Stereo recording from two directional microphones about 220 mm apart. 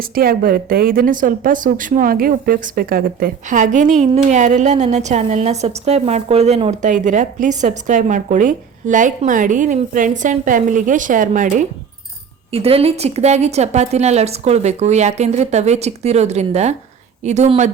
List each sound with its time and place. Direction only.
0.0 s a woman's voice: 40° right (ahead or behind)